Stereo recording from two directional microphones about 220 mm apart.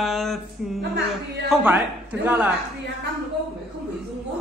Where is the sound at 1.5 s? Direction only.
5° right (ahead or behind).